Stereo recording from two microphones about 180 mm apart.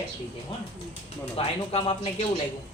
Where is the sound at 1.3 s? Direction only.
30° left (ahead or behind).